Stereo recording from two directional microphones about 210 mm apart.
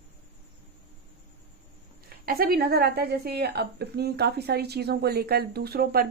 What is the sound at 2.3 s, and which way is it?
Speech, 45° right (ahead or behind).